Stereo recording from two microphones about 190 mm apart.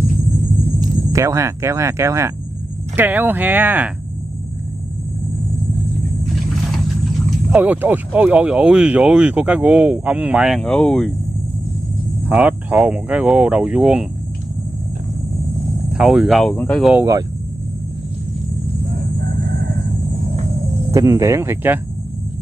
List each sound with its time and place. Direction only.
0.7 s speech: 15° right (ahead or behind)
7.5 s speech: 10° right (ahead or behind)
12.3 s speech: 5° right (ahead or behind)
15.9 s speech: 5° right (ahead or behind)
16.9 s speech: 15° right (ahead or behind)
20.9 s speech: 15° right (ahead or behind)